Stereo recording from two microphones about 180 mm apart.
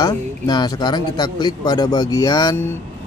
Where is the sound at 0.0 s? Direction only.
25° left (ahead or behind).